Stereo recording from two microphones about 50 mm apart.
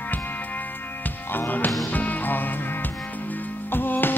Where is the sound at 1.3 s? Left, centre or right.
Left.